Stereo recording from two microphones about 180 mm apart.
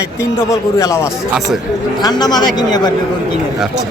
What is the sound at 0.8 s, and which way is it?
Speech, 15° left (ahead or behind).